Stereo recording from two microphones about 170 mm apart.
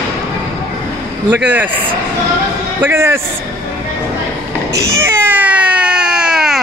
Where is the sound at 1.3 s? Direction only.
10° right (ahead or behind).